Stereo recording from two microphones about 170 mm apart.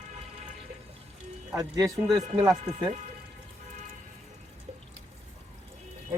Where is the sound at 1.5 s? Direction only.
20° right (ahead or behind).